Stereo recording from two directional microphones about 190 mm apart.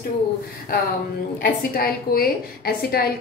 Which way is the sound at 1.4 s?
50° left (ahead or behind).